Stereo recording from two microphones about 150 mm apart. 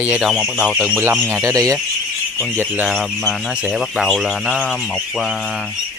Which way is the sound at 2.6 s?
10° right (ahead or behind).